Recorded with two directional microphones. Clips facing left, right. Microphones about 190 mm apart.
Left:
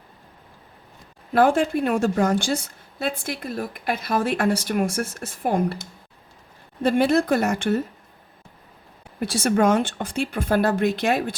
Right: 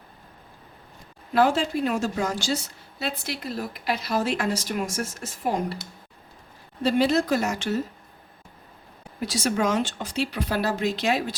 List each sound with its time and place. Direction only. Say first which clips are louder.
1.3 s a woman's voice: left 3 dB; 55° left (ahead or behind)
9.2 s a woman's voice: left 5 dB; 55° left (ahead or behind)